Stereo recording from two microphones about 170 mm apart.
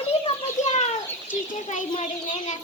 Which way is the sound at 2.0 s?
45° left (ahead or behind).